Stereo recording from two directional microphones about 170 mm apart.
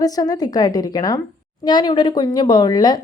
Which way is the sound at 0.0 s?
20° left (ahead or behind).